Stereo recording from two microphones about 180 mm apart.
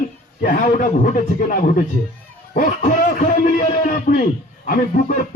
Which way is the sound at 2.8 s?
45° left (ahead or behind).